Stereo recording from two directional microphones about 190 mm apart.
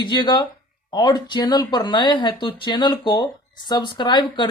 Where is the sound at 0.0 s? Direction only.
25° left (ahead or behind).